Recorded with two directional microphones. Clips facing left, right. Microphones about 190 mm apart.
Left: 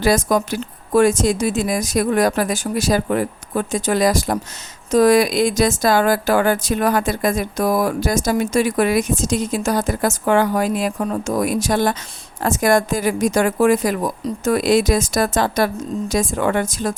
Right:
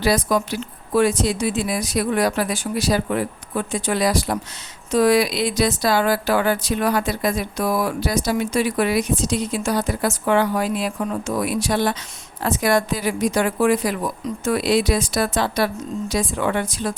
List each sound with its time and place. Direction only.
0.0 s speech: 45° left (ahead or behind)